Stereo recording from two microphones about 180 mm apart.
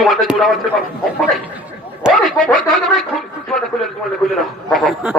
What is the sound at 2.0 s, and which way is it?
Speech, 5° left (ahead or behind).